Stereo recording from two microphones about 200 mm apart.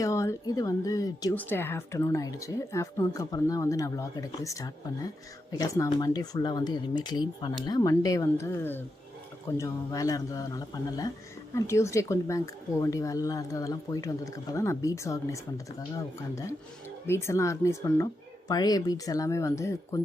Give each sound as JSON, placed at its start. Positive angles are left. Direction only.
{"t": 0.0, "sound": "speech", "side_deg": 15}
{"t": 17.1, "sound": "speech", "side_deg": 15}